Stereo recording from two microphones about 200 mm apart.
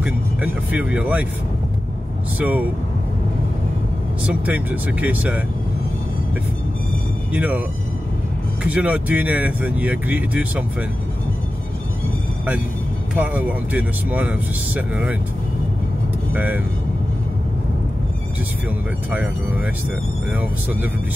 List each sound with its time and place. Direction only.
0.0 s speech: 5° right (ahead or behind)
2.3 s speech: 10° right (ahead or behind)
4.3 s speech: 5° right (ahead or behind)
7.3 s speech: 10° right (ahead or behind)
8.6 s speech: 5° right (ahead or behind)
13.1 s speech: 5° right (ahead or behind)
19.0 s speech: 10° right (ahead or behind)